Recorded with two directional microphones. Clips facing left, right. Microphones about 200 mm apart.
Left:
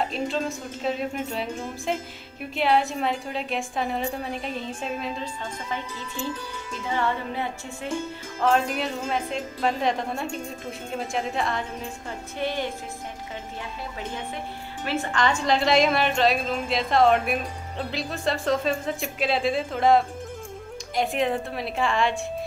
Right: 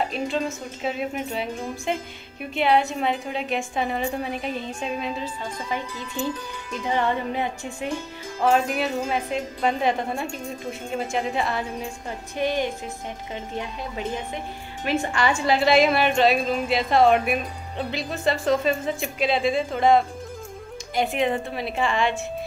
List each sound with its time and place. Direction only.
0.0 s a woman's voice: centre (ahead or behind)
6.9 s music: 20° right (ahead or behind)
8.4 s a woman's voice: 10° right (ahead or behind)
12.4 s music: 15° right (ahead or behind)
14.9 s a woman's voice: 15° right (ahead or behind)